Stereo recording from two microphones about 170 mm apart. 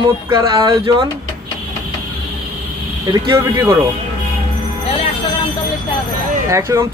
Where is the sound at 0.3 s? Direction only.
20° right (ahead or behind).